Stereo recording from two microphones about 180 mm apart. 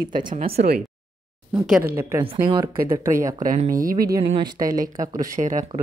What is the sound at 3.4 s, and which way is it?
Speech, 45° right (ahead or behind).